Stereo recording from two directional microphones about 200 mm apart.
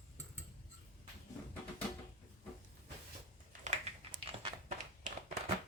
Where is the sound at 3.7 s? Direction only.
35° right (ahead or behind).